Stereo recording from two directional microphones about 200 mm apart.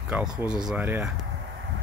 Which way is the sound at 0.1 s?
5° right (ahead or behind).